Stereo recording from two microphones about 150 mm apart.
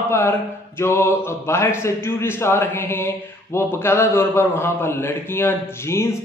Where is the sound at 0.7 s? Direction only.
15° left (ahead or behind).